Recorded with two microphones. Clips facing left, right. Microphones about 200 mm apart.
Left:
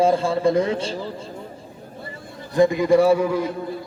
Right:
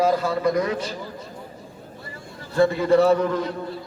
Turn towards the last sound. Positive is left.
turn(degrees=10)  # may be behind; listen again after turning